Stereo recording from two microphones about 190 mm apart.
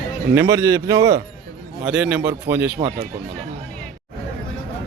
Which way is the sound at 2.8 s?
25° right (ahead or behind).